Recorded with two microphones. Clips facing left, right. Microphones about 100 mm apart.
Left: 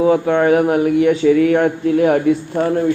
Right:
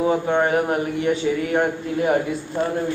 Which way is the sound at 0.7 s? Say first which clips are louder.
Left 8 dB; 90° left.